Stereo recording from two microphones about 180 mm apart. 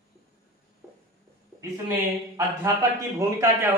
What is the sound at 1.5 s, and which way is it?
Speech, 15° right (ahead or behind).